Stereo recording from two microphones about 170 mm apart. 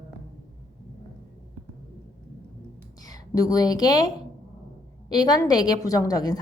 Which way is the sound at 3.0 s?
20° left (ahead or behind).